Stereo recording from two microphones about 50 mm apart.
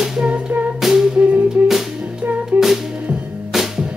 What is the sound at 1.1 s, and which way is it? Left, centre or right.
Music, right.